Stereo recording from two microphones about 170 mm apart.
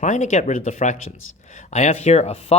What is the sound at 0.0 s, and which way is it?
Speech, 45° left (ahead or behind).